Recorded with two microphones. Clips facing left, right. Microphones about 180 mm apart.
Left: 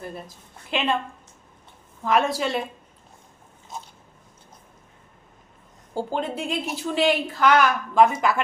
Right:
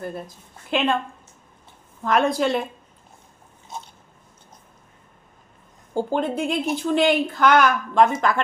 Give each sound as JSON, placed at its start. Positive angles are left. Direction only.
{"t": 0.7, "sound": "a woman's voice", "side_deg": 0}
{"t": 2.0, "sound": "a woman's voice", "side_deg": 0}
{"t": 5.9, "sound": "a woman's voice", "side_deg": 0}